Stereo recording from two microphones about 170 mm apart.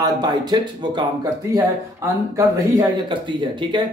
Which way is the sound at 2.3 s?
20° right (ahead or behind).